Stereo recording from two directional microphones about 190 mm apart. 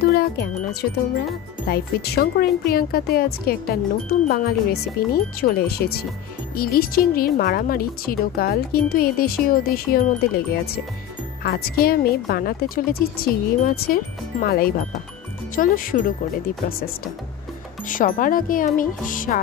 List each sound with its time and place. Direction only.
1.7 s speech: 55° left (ahead or behind)